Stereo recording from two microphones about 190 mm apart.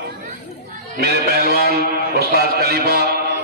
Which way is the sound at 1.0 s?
55° right (ahead or behind).